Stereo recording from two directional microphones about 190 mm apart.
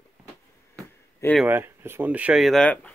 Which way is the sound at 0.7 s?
5° left (ahead or behind).